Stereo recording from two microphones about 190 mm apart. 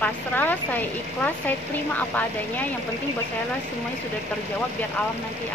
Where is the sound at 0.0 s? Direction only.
10° left (ahead or behind).